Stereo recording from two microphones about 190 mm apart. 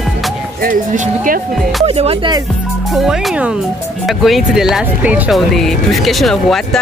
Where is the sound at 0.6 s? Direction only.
45° right (ahead or behind).